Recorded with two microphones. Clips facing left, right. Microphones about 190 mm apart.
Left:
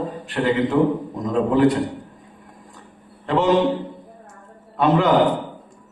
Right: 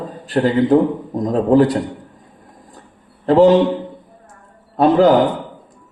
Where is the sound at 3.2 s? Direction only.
35° right (ahead or behind).